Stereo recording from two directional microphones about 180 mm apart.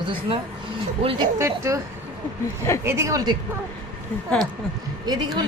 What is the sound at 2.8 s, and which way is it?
Speech, 15° right (ahead or behind).